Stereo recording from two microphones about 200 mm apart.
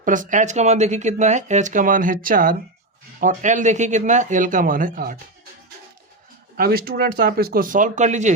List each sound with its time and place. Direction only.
0.0 s speech: 40° right (ahead or behind)
6.6 s speech: 50° right (ahead or behind)